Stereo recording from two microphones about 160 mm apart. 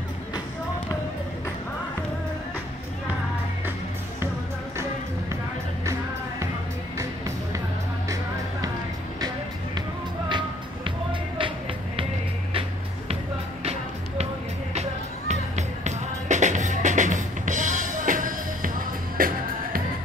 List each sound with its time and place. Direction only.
9.8 s music: 30° right (ahead or behind)
14.7 s music: 45° right (ahead or behind); by 19.8 s 65° right (ahead or behind)